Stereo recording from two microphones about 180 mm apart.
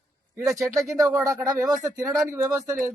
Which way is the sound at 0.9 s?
20° right (ahead or behind).